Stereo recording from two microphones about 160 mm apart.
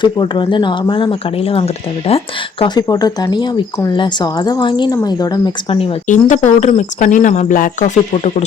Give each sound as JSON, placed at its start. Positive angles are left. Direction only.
{"t": 0.0, "sound": "speech", "side_deg": 30}
{"t": 5.7, "sound": "speech", "side_deg": 35}
{"t": 6.1, "sound": "speech", "side_deg": 50}